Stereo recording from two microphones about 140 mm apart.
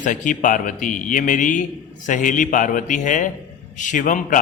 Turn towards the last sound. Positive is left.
turn(degrees=70)  # may be behind; listen again after turning